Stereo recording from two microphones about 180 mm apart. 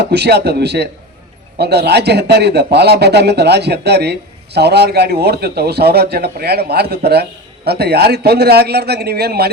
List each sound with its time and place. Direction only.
0.0 s a man's voice: 65° right (ahead or behind)